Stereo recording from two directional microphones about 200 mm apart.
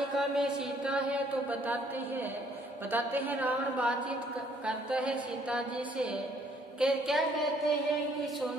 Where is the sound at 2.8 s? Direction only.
10° right (ahead or behind).